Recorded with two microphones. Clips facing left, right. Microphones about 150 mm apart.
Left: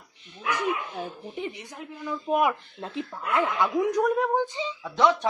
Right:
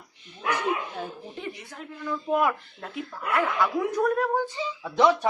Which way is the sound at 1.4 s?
20° left (ahead or behind).